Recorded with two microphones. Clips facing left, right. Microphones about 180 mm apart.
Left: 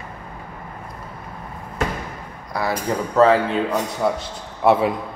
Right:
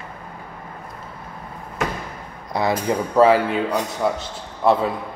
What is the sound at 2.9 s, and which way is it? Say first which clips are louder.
Speech: even; 10° right (ahead or behind).